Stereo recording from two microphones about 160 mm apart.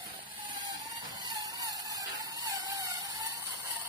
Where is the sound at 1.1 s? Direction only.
25° right (ahead or behind).